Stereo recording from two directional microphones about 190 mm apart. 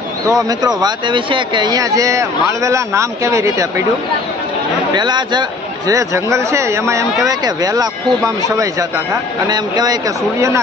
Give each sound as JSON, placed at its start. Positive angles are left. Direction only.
{"t": 0.3, "sound": "speech", "side_deg": -20}
{"t": 4.9, "sound": "speech", "side_deg": -25}
{"t": 9.5, "sound": "speech", "side_deg": -20}